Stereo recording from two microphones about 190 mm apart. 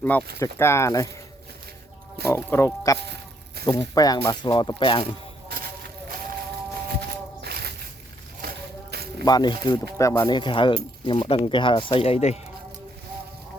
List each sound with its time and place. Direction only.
0.0 s speech: 10° left (ahead or behind)
2.2 s speech: 15° left (ahead or behind)
3.1 s a sound: 55° right (ahead or behind)
3.7 s speech: 20° left (ahead or behind)
7.4 s a sound: 55° right (ahead or behind)
8.4 s music: 55° right (ahead or behind)
9.2 s speech: 20° left (ahead or behind)